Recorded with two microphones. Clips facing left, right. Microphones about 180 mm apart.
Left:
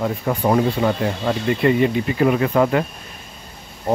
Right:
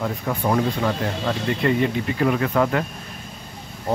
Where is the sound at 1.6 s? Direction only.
10° left (ahead or behind).